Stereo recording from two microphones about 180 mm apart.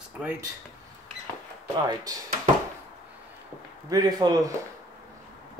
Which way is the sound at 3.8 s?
20° right (ahead or behind).